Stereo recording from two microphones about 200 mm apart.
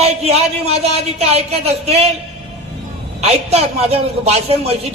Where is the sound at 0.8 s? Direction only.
30° right (ahead or behind).